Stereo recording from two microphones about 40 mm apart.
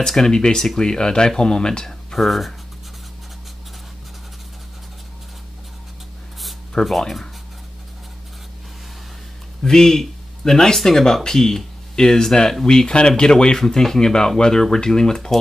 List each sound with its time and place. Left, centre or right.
0.0 s speech: centre
2.1 s speech: centre
6.8 s speech: centre
9.6 s speech: centre